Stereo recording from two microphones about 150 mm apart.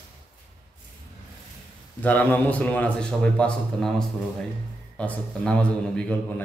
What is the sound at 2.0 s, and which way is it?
A man's voice, 10° left (ahead or behind).